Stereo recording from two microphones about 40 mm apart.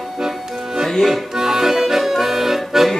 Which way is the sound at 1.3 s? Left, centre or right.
Centre.